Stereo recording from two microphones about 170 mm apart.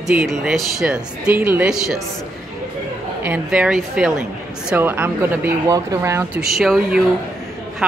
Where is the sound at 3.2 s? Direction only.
5° right (ahead or behind).